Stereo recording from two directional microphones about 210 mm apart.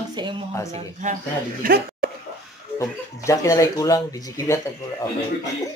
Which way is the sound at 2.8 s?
15° left (ahead or behind).